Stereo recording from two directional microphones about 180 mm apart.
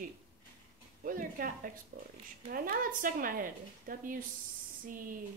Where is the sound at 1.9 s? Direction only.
65° right (ahead or behind).